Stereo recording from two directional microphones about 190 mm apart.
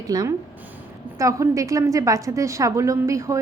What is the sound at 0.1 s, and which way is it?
A woman's voice, 20° right (ahead or behind).